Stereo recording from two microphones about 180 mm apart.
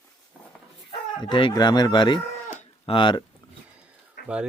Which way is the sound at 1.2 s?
25° left (ahead or behind).